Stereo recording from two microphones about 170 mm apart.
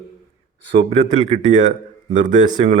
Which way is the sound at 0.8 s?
40° right (ahead or behind).